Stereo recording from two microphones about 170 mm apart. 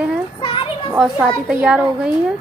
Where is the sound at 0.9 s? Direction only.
5° right (ahead or behind).